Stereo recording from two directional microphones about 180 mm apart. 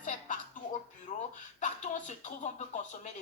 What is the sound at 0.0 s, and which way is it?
Music, 45° left (ahead or behind).